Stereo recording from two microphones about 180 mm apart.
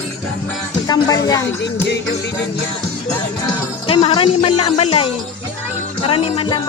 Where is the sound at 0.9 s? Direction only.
20° left (ahead or behind).